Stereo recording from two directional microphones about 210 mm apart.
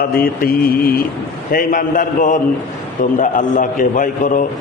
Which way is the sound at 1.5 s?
40° left (ahead or behind).